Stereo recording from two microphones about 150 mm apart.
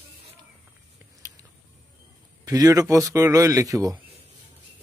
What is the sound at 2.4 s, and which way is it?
Speech, 25° right (ahead or behind).